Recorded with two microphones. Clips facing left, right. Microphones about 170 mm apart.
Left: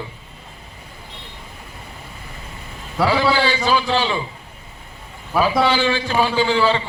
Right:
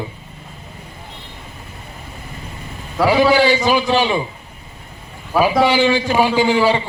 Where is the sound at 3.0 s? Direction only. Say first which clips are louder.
Right 5 dB; 15° right (ahead or behind).